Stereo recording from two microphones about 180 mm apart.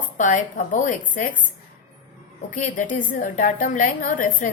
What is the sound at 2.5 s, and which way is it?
A woman's voice, 45° left (ahead or behind).